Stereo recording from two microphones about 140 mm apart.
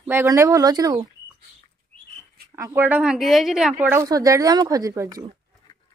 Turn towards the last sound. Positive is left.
turn(degrees=-25)  # may be behind; listen again after turning